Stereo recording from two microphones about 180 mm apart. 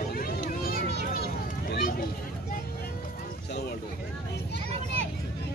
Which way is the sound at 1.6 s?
65° left (ahead or behind).